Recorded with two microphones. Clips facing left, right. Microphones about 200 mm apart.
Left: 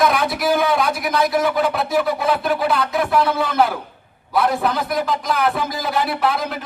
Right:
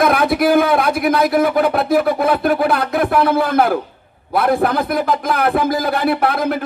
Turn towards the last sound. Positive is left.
turn(degrees=-55)  # may be behind; listen again after turning